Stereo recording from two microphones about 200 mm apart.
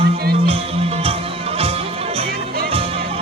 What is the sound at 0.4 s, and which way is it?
Music, 30° right (ahead or behind).